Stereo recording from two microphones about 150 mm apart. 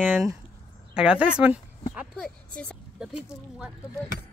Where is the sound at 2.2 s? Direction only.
5° left (ahead or behind).